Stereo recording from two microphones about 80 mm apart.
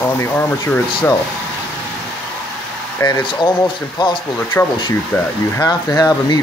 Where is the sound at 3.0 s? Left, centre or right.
Left.